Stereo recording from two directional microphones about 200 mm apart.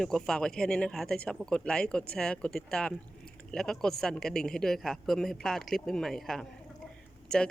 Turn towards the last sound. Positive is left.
turn(degrees=5)  # may be behind; listen again after turning